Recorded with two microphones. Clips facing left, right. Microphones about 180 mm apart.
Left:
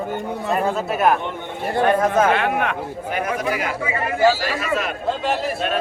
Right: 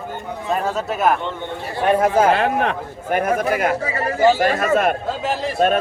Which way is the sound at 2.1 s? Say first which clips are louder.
Right 2 dB; 35° right (ahead or behind).